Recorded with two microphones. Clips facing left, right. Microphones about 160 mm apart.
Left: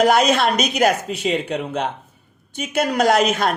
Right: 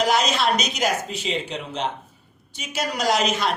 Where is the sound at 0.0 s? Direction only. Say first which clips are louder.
Left 5 dB; 55° left (ahead or behind).